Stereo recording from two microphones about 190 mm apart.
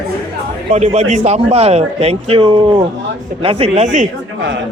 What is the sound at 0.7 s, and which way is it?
Speech, 35° right (ahead or behind).